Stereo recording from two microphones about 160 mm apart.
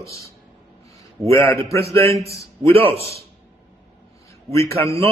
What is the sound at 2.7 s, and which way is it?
Speech, 35° right (ahead or behind).